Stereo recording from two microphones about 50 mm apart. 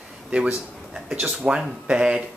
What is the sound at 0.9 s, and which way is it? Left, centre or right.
Speech, centre.